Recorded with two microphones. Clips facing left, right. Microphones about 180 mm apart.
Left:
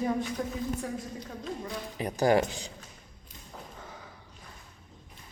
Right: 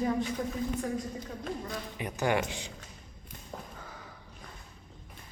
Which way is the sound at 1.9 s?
35° left (ahead or behind).